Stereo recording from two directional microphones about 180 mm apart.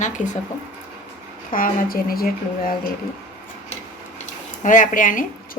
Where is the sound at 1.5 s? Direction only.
50° left (ahead or behind).